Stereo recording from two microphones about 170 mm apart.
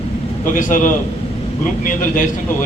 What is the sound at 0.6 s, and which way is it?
Speech, 55° left (ahead or behind).